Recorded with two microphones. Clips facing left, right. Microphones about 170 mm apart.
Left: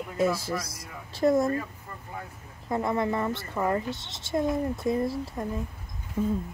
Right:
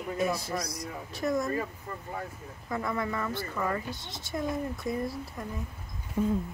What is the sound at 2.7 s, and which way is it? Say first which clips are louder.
Speech: left 5 dB; 25° left (ahead or behind).